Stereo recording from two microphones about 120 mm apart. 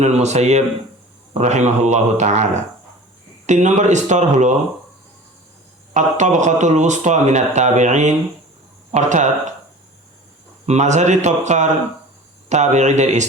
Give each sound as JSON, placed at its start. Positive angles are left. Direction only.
{"t": 0.0, "sound": "speech", "side_deg": -70}
{"t": 5.9, "sound": "speech", "side_deg": -85}
{"t": 10.7, "sound": "speech", "side_deg": -75}